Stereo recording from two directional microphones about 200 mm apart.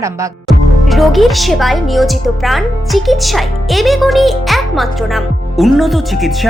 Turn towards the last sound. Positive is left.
turn(degrees=0)  # may be behind; listen again after turning